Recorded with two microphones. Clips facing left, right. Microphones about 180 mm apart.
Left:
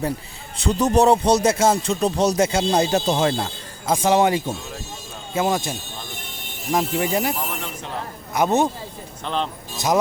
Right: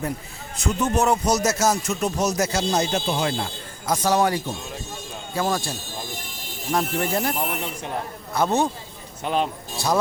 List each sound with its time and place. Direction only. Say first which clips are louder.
0.5 s speech: left 4 dB; 30° left (ahead or behind)
3.1 s speech: left 4 dB; 45° left (ahead or behind)
4.0 s speech: left 3 dB; 25° left (ahead or behind)
6.7 s speech: left 2 dB; 15° left (ahead or behind)
7.3 s speech: right 2 dB; 15° right (ahead or behind)
8.3 s speech: left 2 dB; 20° left (ahead or behind)
9.2 s speech: right 2 dB; 10° right (ahead or behind)
9.7 s speech: left 3 dB; 20° left (ahead or behind)